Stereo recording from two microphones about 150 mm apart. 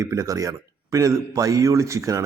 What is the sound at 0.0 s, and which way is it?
A man's voice, 20° right (ahead or behind).